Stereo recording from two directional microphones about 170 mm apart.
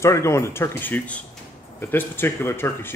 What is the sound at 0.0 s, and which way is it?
Speech, 15° left (ahead or behind).